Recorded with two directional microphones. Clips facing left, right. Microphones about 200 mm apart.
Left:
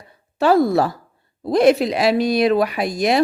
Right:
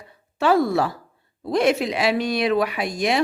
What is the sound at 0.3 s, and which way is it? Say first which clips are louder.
A woman's voice: left 4 dB; 35° left (ahead or behind).